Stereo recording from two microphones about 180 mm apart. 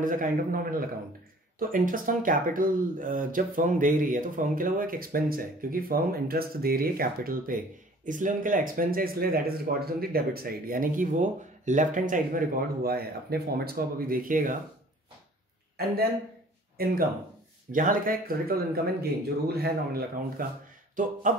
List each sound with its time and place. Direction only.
0.0 s speech: 45° right (ahead or behind)
16.7 s speech: 55° right (ahead or behind)
20.9 s speech: 45° right (ahead or behind)